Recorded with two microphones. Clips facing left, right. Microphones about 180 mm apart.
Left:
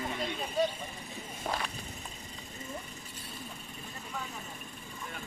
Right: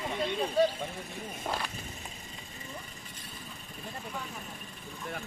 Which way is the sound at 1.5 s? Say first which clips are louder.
Even; centre (ahead or behind).